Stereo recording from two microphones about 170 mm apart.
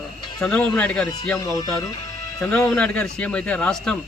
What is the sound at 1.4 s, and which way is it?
Speech, 20° left (ahead or behind).